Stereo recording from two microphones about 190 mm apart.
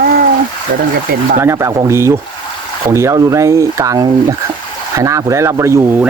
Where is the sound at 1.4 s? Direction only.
15° right (ahead or behind).